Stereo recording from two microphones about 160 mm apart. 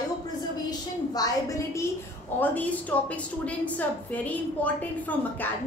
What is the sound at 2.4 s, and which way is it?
A woman's voice, 10° left (ahead or behind).